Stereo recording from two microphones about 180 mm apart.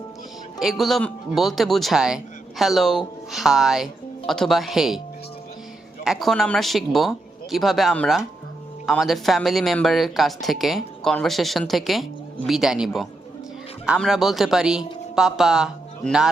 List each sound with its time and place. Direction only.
0.6 s speech: centre (ahead or behind)
6.1 s speech: centre (ahead or behind)